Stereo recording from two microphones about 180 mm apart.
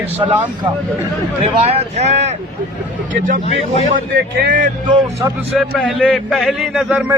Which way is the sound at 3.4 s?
35° left (ahead or behind).